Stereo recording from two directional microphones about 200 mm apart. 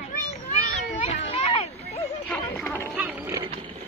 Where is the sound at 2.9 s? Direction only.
5° right (ahead or behind).